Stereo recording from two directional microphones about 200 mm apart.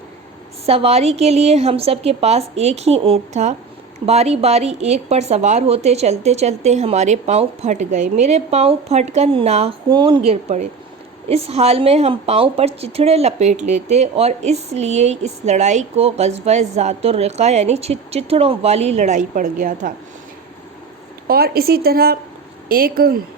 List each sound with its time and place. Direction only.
0.6 s a woman's voice: 30° right (ahead or behind)
10.2 s a woman's voice: 35° right (ahead or behind)
21.2 s a woman's voice: 50° right (ahead or behind)